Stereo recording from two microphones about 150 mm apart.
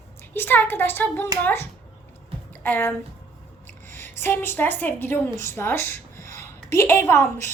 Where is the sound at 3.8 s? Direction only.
15° left (ahead or behind).